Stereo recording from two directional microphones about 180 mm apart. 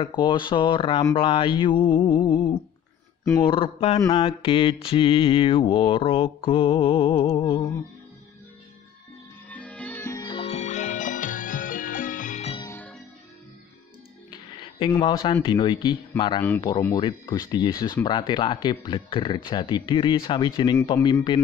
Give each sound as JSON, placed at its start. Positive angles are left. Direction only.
{"t": 0.0, "sound": "speech", "side_deg": 25}
{"t": 4.1, "sound": "mantra", "side_deg": 30}
{"t": 9.5, "sound": "music", "side_deg": 5}
{"t": 12.7, "sound": "music", "side_deg": 5}
{"t": 14.3, "sound": "a sound", "side_deg": 25}
{"t": 15.4, "sound": "speech", "side_deg": 25}